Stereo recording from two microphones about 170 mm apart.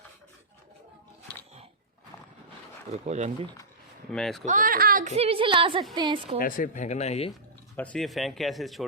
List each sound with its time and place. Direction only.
2.9 s a woman's voice: 40° right (ahead or behind)
4.1 s speech: centre (ahead or behind)
4.4 s speech: 55° right (ahead or behind)
5.1 s a woman's voice: 35° right (ahead or behind)
6.4 s speech: 50° left (ahead or behind)
7.8 s speech: 5° left (ahead or behind)